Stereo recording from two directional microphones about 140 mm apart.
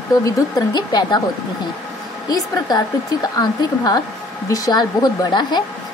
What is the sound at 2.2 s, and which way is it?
A woman's voice, 30° left (ahead or behind).